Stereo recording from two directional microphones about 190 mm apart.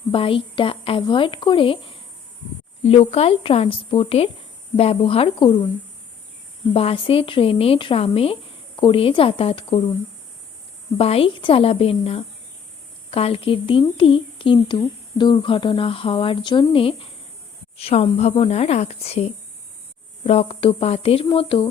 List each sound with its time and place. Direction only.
0.1 s a woman's voice: 30° left (ahead or behind)
6.7 s a woman's voice: 30° left (ahead or behind)
10.9 s a woman's voice: 30° left (ahead or behind)